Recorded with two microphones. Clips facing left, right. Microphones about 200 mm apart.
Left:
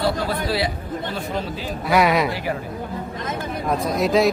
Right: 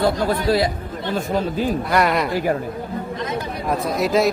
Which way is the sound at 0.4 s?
45° right (ahead or behind).